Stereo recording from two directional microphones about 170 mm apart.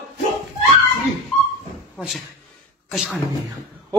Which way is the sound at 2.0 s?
Centre (ahead or behind).